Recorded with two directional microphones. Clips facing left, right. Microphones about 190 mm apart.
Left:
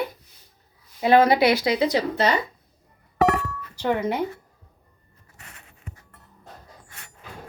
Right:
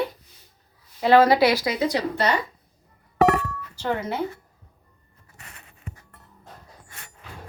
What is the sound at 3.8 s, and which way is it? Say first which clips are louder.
Speech: left 3 dB; 15° left (ahead or behind).